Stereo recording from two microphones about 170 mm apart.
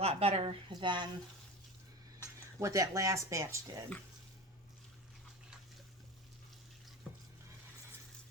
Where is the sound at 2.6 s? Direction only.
20° right (ahead or behind).